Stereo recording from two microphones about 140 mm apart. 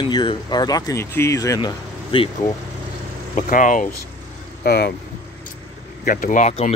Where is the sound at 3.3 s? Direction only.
70° left (ahead or behind).